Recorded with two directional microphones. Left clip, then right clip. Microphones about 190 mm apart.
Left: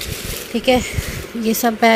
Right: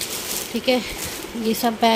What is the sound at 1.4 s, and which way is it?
Speech, 15° left (ahead or behind).